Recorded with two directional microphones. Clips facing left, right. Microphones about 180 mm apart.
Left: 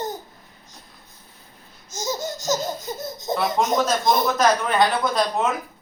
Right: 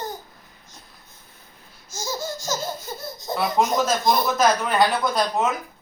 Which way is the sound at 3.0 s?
20° left (ahead or behind).